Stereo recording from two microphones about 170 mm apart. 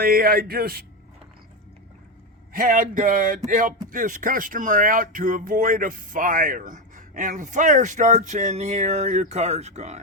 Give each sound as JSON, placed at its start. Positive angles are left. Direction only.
{"t": 0.0, "sound": "speech", "side_deg": -60}
{"t": 2.5, "sound": "speech", "side_deg": -60}